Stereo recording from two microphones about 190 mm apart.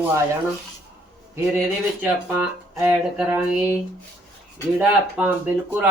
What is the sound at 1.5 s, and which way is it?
Speech, 5° right (ahead or behind).